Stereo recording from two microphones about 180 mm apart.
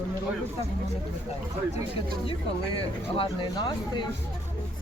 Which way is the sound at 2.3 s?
30° left (ahead or behind).